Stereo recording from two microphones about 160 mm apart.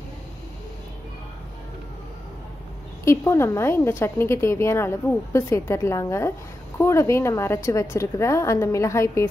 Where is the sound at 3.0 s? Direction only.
15° left (ahead or behind).